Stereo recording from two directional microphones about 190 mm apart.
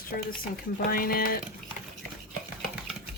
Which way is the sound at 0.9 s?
50° left (ahead or behind).